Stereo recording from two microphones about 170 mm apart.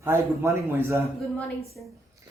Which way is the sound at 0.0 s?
15° right (ahead or behind).